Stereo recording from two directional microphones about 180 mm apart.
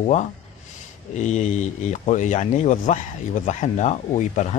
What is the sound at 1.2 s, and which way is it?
Speech, 40° left (ahead or behind).